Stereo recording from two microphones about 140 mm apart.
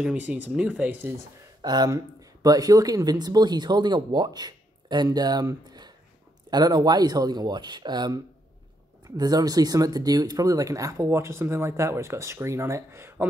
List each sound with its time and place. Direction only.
0.0 s speech: 10° right (ahead or behind)
1.6 s speech: 30° right (ahead or behind)